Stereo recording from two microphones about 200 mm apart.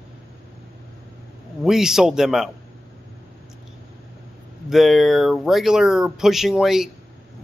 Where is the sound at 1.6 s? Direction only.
Centre (ahead or behind).